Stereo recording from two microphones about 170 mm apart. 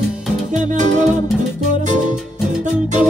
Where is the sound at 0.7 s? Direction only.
45° right (ahead or behind).